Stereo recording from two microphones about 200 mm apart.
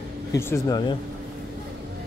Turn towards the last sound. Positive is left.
turn(degrees=20)  # may be behind; listen again after turning